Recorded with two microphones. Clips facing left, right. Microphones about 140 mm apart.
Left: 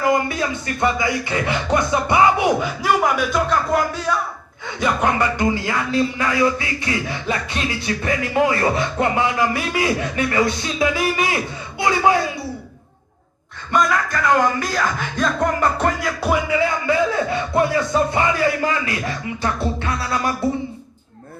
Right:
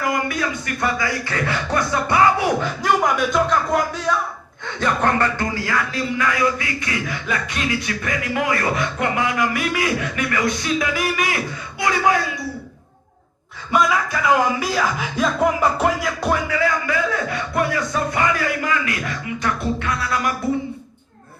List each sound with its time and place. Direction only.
0.0 s speech: 25° left (ahead or behind)
2.6 s speech: 5° left (ahead or behind)
5.5 s speech: 25° left (ahead or behind)
13.7 s speech: 5° right (ahead or behind)
16.3 s speech: 20° left (ahead or behind)